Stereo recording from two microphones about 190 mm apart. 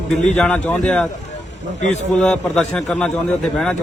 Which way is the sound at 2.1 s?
5° left (ahead or behind).